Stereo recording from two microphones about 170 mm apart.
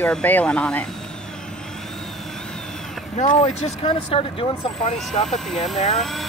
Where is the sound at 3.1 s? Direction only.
45° left (ahead or behind).